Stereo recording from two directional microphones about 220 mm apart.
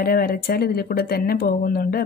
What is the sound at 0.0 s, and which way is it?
A woman's voice, 45° left (ahead or behind).